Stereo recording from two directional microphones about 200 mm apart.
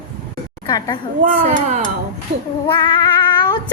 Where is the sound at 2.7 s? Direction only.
25° left (ahead or behind).